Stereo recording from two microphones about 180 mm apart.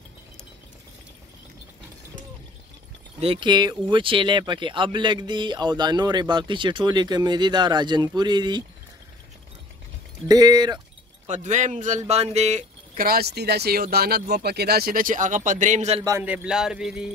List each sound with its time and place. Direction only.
3.2 s speech: 30° right (ahead or behind)
10.2 s speech: 20° right (ahead or behind)
11.2 s speech: 40° right (ahead or behind)
13.0 s speech: 60° right (ahead or behind); by 16.0 s 40° right (ahead or behind)
16.0 s speech: 20° right (ahead or behind)
16.3 s music: 5° right (ahead or behind)